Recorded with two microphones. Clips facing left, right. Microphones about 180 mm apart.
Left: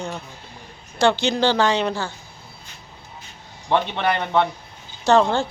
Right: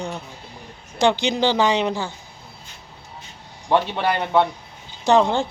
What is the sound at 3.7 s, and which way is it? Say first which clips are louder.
A woman's voice: right 1 dB; 5° right (ahead or behind).